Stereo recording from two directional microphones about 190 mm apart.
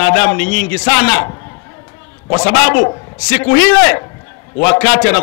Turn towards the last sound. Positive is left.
turn(degrees=10)  # may be behind; listen again after turning